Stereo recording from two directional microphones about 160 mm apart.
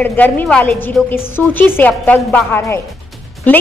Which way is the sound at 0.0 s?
10° left (ahead or behind).